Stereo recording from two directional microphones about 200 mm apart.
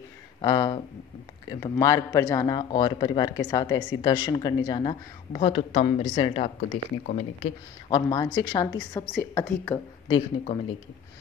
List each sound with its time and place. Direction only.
0.4 s a woman's voice: 20° left (ahead or behind)
7.1 s speech: 40° left (ahead or behind)
7.9 s a woman's voice: 20° left (ahead or behind)
10.0 s a woman's voice: 25° left (ahead or behind)